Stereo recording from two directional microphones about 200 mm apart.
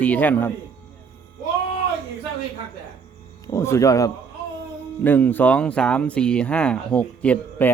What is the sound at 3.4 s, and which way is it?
Speech, 15° left (ahead or behind).